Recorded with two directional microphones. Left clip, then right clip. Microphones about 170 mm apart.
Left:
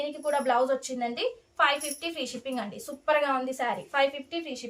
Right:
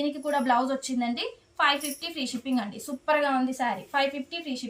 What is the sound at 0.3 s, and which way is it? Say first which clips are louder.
A woman's voice: left 1 dB; 45° left (ahead or behind).